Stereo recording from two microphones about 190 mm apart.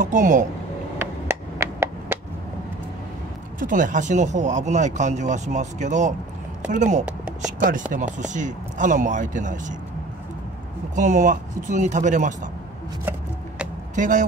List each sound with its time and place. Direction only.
0.0 s speech: 40° right (ahead or behind)
2.1 s a sound: 10° right (ahead or behind)
3.5 s speech: 45° right (ahead or behind)
7.1 s a sound: 5° right (ahead or behind)
7.9 s speech: 40° right (ahead or behind)
11.0 s speech: 40° right (ahead or behind)
13.9 s speech: 40° right (ahead or behind)